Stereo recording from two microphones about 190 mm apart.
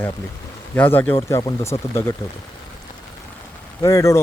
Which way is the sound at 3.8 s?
15° left (ahead or behind).